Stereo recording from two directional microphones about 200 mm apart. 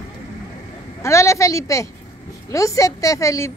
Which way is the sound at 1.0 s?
15° left (ahead or behind).